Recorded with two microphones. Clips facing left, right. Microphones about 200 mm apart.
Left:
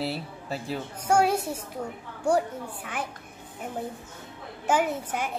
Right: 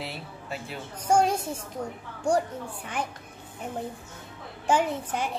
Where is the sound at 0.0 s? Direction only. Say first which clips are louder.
Left 6 dB; 35° left (ahead or behind).